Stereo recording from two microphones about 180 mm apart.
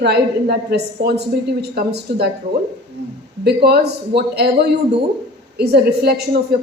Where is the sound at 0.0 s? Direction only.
65° right (ahead or behind).